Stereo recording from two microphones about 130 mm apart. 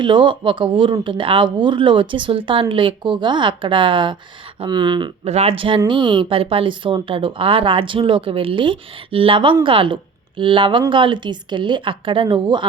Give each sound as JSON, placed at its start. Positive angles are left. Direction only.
{"t": 0.0, "sound": "a woman's voice", "side_deg": -40}
{"t": 5.2, "sound": "a woman's voice", "side_deg": -55}